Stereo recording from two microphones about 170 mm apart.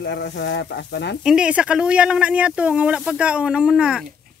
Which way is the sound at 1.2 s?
5° right (ahead or behind).